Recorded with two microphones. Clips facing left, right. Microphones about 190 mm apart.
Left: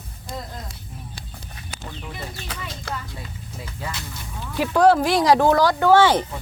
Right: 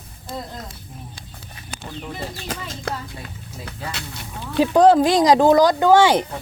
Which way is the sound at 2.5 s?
60° right (ahead or behind).